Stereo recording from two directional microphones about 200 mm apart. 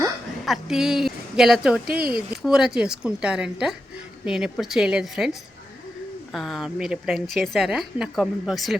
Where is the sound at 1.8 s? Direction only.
50° right (ahead or behind).